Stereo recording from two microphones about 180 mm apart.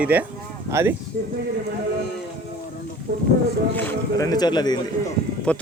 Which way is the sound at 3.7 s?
20° left (ahead or behind).